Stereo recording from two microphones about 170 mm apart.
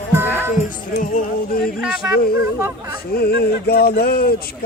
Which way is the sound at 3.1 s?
65° left (ahead or behind).